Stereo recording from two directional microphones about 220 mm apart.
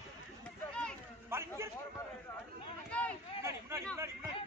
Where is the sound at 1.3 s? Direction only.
10° right (ahead or behind).